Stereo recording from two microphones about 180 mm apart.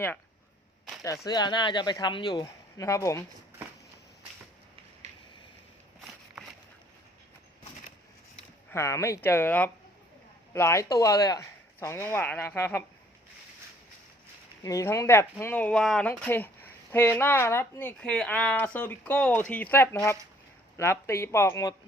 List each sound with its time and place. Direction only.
1.0 s speech: 20° left (ahead or behind)
6.1 s walk: centre (ahead or behind)
8.7 s speech: 15° left (ahead or behind)
14.6 s speech: 20° left (ahead or behind)